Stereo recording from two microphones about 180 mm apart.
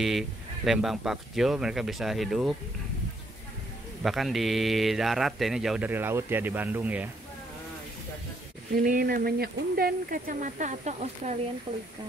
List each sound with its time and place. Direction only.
0.0 s speech: centre (ahead or behind)
4.0 s speech: centre (ahead or behind)
8.7 s speech: 55° right (ahead or behind)